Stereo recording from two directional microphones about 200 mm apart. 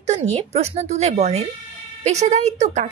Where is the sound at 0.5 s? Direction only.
30° right (ahead or behind).